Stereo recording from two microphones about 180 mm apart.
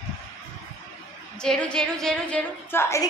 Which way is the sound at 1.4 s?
5° left (ahead or behind).